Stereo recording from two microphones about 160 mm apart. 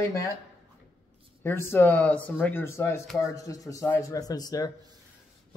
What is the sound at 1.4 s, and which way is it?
Speech, 15° left (ahead or behind).